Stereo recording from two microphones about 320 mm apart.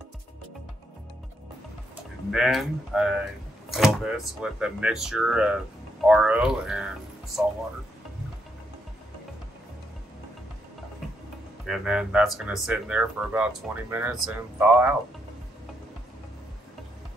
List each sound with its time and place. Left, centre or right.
2.3 s speech: centre
11.6 s speech: centre